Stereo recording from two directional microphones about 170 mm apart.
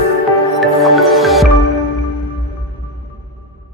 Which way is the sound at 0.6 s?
Centre (ahead or behind).